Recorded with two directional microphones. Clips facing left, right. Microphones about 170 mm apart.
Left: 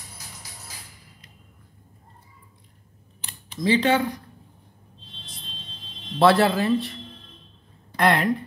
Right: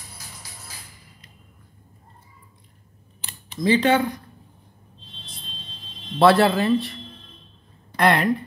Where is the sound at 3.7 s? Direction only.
55° right (ahead or behind).